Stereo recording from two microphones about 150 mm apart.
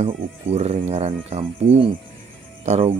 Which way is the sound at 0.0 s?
45° right (ahead or behind).